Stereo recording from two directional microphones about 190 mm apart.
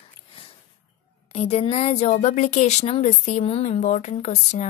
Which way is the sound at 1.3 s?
35° left (ahead or behind).